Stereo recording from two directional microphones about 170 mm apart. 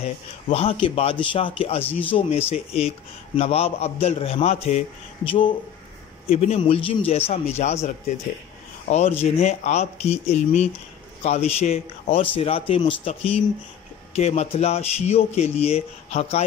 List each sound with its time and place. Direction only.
0.0 s speech: 35° left (ahead or behind)
14.1 s speech: 40° left (ahead or behind)